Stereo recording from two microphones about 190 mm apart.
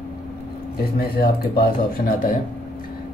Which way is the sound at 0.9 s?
55° left (ahead or behind).